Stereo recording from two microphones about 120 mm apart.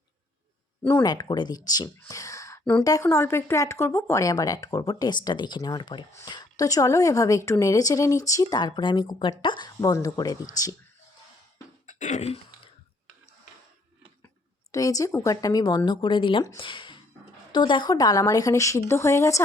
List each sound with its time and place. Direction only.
1.0 s a woman's voice: 35° left (ahead or behind)
11.9 s throat clearing: 85° left
14.7 s a woman's voice: 30° left (ahead or behind)